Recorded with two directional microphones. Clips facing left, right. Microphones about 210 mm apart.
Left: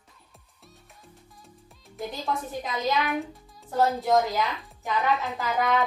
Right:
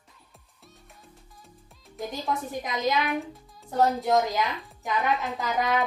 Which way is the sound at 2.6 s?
15° right (ahead or behind).